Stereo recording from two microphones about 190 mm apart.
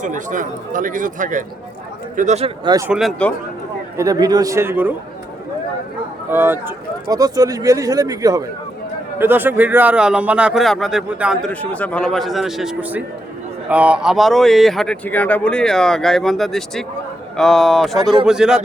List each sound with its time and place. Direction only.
0.0 s speech: 40° right (ahead or behind)
2.6 s a man's voice: 20° right (ahead or behind)
2.9 s speech: centre (ahead or behind)
3.9 s a man's voice: 20° right (ahead or behind)
6.3 s a man's voice: 10° right (ahead or behind)
11.6 s speech: 10° left (ahead or behind)